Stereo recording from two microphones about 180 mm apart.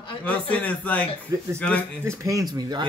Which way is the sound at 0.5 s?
10° left (ahead or behind).